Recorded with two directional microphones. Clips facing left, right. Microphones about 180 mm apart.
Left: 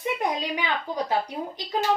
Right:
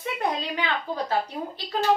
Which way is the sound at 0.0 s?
15° left (ahead or behind).